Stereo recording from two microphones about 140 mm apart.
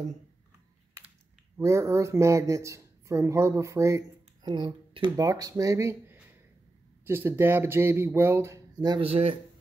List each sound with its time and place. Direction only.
1.6 s speech: 20° right (ahead or behind)
8.7 s speech: 30° right (ahead or behind)
9.0 s speech: 45° right (ahead or behind)